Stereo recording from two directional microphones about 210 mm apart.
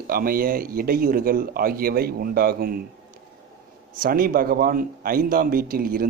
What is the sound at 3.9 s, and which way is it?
Speech, 45° right (ahead or behind).